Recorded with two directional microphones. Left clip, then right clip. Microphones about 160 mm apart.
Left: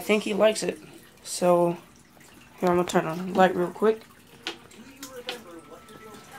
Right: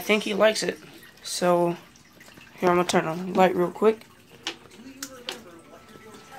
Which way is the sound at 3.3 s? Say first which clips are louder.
Right 1 dB; 20° right (ahead or behind).